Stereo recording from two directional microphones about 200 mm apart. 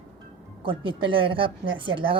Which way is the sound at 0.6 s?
25° right (ahead or behind).